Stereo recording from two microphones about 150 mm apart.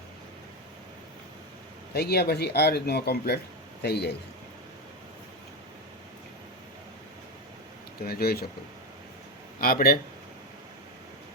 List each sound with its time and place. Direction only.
1.9 s speech: 90° left
8.0 s speech: 90° left
9.6 s a man's voice: 80° left